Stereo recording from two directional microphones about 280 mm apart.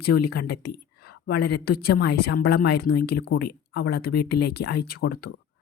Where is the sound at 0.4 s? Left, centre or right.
Left.